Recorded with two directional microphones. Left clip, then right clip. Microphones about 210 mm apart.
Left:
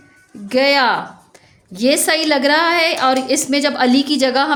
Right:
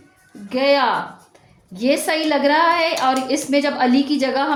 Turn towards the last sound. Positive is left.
turn(degrees=40)  # may be behind; listen again after turning